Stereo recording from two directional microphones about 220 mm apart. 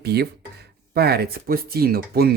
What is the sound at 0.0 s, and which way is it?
Speech, 45° right (ahead or behind).